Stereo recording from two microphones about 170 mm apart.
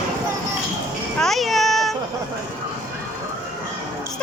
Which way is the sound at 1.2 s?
Centre (ahead or behind).